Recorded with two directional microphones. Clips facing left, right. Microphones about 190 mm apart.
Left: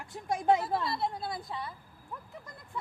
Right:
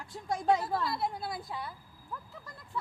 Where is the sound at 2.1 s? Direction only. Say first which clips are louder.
Even; 20° left (ahead or behind).